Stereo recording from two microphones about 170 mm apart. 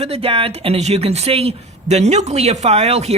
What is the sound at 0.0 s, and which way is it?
Speech, 35° right (ahead or behind).